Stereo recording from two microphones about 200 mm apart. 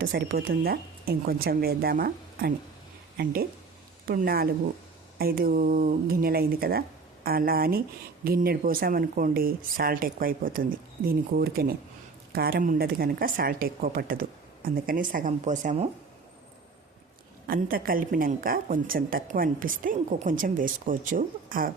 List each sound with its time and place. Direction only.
0.0 s speech: 50° right (ahead or behind)
4.0 s speech: 45° right (ahead or behind)
17.5 s speech: 45° right (ahead or behind)